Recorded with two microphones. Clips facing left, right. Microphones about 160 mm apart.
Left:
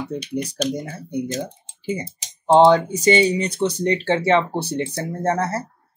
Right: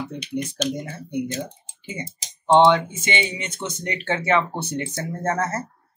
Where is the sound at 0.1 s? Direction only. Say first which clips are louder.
Left 3 dB; 40° left (ahead or behind).